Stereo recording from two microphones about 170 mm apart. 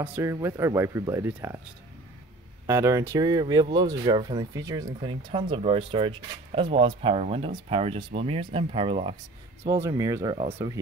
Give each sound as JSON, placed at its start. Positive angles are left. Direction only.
{"t": 0.0, "sound": "speech", "side_deg": -15}
{"t": 2.6, "sound": "speech", "side_deg": -15}
{"t": 5.3, "sound": "speech", "side_deg": -30}
{"t": 9.7, "sound": "speech", "side_deg": -20}